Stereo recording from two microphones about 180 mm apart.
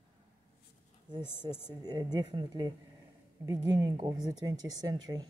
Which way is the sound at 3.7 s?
20° right (ahead or behind).